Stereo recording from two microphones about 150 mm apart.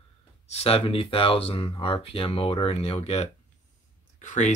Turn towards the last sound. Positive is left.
turn(degrees=55)  # may be behind; listen again after turning